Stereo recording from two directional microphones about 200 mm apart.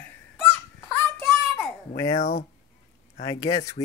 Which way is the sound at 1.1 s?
10° left (ahead or behind).